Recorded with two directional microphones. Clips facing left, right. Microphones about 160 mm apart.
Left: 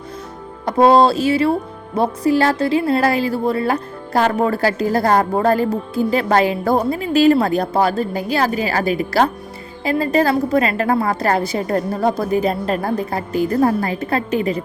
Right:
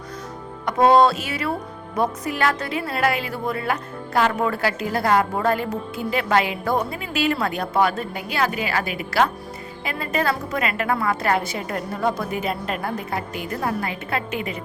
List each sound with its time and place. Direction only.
0.6 s a woman's voice: 30° left (ahead or behind)